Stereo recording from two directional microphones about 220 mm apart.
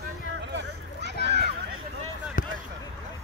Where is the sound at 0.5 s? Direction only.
50° right (ahead or behind).